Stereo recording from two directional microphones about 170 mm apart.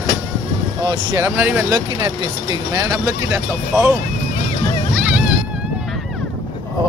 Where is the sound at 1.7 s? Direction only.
25° right (ahead or behind).